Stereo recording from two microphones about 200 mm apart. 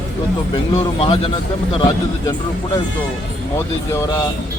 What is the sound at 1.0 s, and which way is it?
Speech, 30° left (ahead or behind).